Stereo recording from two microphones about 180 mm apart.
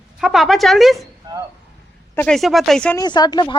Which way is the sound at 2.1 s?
5° left (ahead or behind).